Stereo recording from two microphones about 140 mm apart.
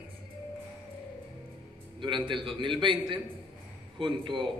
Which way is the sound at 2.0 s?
35° right (ahead or behind).